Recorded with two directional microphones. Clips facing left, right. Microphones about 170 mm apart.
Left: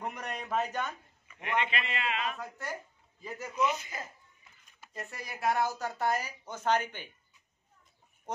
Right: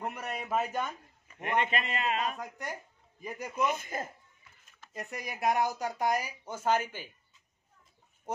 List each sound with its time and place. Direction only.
0.0 s a man's voice: 5° right (ahead or behind)
1.2 s a man's voice: 45° right (ahead or behind)
3.2 s speech: 15° right (ahead or behind)
3.5 s a man's voice: 50° right (ahead or behind)
4.9 s speech: 20° right (ahead or behind)